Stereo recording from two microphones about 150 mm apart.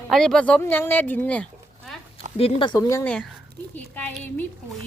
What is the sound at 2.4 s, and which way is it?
Speech, 35° left (ahead or behind).